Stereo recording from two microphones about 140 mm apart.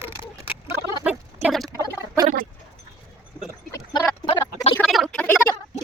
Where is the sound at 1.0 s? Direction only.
Centre (ahead or behind).